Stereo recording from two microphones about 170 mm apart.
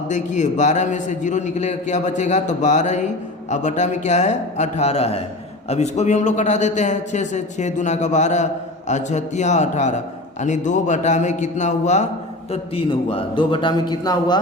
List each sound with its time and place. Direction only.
0.1 s a man's voice: 45° left (ahead or behind)
12.5 s a man's voice: 35° left (ahead or behind)